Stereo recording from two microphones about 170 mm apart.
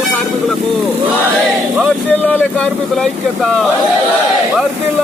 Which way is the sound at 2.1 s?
10° left (ahead or behind).